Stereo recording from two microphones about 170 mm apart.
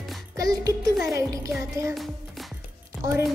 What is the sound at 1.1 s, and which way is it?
Speech, 20° right (ahead or behind).